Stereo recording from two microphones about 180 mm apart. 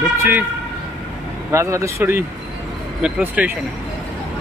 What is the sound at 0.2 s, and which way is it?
Speech, 10° right (ahead or behind).